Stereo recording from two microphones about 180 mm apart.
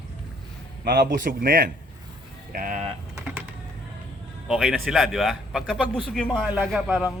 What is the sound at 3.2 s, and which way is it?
Typing, 5° right (ahead or behind).